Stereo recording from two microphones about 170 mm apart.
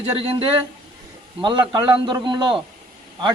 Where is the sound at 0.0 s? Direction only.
35° right (ahead or behind).